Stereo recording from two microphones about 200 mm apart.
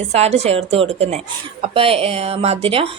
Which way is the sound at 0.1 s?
30° right (ahead or behind).